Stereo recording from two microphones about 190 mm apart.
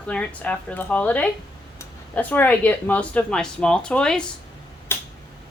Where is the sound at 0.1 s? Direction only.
5° left (ahead or behind).